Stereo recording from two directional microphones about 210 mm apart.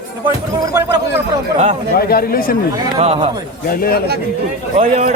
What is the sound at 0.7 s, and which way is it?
Speech, 15° right (ahead or behind).